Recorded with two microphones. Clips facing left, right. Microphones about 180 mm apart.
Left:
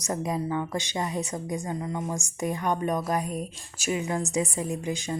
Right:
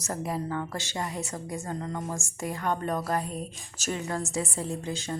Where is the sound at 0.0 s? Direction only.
20° left (ahead or behind).